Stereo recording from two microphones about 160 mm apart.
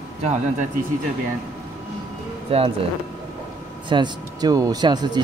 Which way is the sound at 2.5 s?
40° right (ahead or behind).